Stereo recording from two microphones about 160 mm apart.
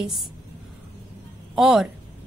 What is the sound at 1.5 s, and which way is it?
Speech, centre (ahead or behind).